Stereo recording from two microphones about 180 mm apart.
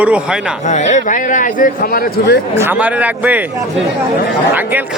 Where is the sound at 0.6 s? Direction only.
40° left (ahead or behind).